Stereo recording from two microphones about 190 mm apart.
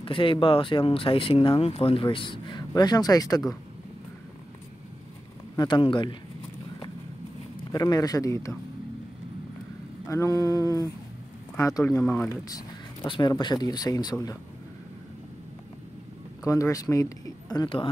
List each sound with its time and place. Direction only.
0.0 s speech: 25° left (ahead or behind)
5.6 s speech: 25° left (ahead or behind)
7.5 s a man's voice: 20° left (ahead or behind)
10.0 s speech: 15° left (ahead or behind)
12.0 s speech: 5° left (ahead or behind)
12.3 s speech: 20° left (ahead or behind)
16.4 s speech: 15° left (ahead or behind)